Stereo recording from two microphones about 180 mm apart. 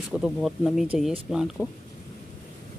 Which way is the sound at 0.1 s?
Centre (ahead or behind).